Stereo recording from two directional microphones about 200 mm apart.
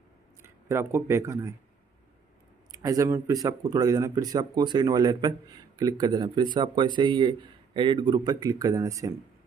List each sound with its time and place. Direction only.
0.4 s speech: 15° right (ahead or behind)
2.8 s speech: 15° right (ahead or behind)